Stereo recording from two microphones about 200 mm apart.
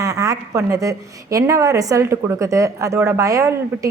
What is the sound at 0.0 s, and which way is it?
A woman's voice, 15° right (ahead or behind).